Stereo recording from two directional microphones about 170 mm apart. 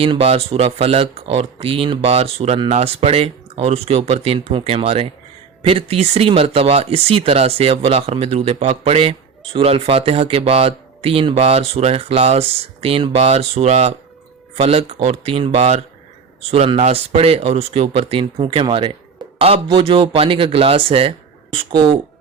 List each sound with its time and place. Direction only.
0.0 s speech: 35° right (ahead or behind)